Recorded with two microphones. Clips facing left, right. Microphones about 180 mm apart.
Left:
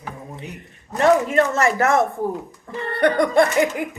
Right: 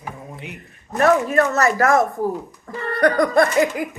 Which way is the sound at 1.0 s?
25° left (ahead or behind).